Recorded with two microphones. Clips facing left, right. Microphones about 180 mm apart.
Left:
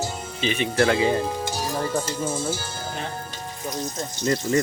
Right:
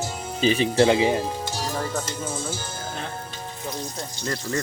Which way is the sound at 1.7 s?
10° left (ahead or behind).